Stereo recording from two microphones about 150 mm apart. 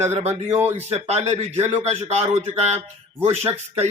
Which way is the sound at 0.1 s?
45° right (ahead or behind).